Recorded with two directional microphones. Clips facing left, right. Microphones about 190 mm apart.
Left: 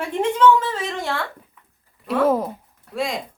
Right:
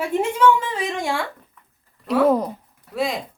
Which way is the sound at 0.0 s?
10° right (ahead or behind).